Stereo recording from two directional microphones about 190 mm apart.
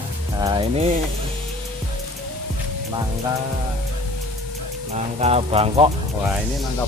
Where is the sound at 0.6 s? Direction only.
30° right (ahead or behind).